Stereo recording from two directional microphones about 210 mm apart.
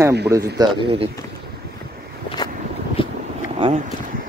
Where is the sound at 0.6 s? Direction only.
25° right (ahead or behind).